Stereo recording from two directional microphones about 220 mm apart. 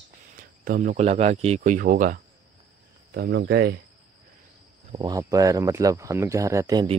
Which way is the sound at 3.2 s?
50° right (ahead or behind).